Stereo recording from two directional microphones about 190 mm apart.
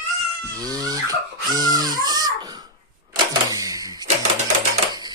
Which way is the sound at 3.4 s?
20° right (ahead or behind).